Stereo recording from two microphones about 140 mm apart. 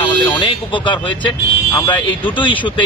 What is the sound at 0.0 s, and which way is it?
Speech, 35° left (ahead or behind).